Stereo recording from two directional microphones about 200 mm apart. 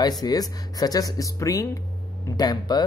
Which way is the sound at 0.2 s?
20° left (ahead or behind).